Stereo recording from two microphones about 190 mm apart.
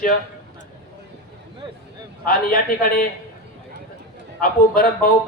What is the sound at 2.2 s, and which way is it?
Speech, 50° left (ahead or behind).